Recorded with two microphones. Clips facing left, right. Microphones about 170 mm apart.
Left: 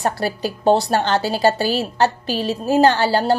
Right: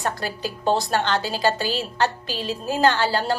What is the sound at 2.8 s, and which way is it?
Speech, 30° left (ahead or behind).